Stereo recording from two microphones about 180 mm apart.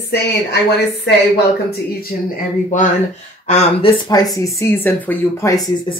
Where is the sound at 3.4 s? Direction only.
40° left (ahead or behind).